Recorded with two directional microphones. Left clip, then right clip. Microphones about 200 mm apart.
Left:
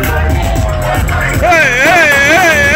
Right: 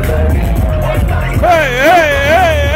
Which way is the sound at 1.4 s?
20° right (ahead or behind).